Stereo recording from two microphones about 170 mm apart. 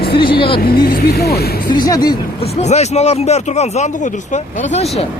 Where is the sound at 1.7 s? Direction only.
25° left (ahead or behind).